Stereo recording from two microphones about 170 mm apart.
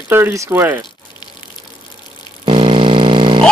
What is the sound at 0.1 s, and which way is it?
Speech, 15° right (ahead or behind).